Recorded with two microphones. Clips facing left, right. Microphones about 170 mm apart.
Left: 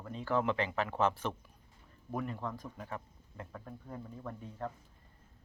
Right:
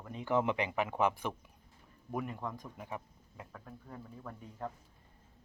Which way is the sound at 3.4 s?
Centre (ahead or behind).